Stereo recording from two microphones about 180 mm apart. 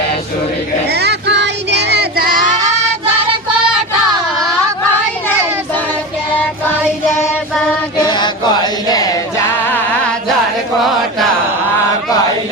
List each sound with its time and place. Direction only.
0.9 s child singing: 65° right (ahead or behind); by 2.7 s 45° right (ahead or behind)
7.9 s chant: 25° left (ahead or behind)